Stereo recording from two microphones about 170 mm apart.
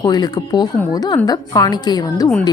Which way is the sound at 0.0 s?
25° left (ahead or behind).